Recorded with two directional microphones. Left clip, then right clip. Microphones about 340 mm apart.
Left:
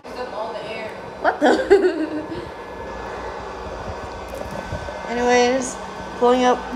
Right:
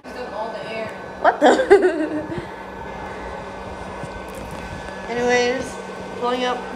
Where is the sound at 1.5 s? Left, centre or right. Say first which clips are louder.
Left 1 dB; centre.